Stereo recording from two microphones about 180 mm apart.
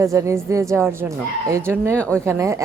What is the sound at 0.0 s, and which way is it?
Speech, 15° right (ahead or behind).